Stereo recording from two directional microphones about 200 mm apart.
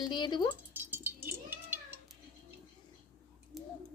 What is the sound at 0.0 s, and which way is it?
Speech, 20° left (ahead or behind).